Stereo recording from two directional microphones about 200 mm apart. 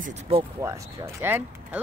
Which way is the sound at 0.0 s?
30° right (ahead or behind).